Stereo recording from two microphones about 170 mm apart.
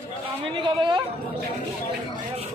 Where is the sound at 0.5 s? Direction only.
30° right (ahead or behind).